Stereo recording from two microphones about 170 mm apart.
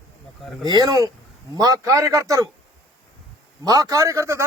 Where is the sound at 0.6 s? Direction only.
25° right (ahead or behind).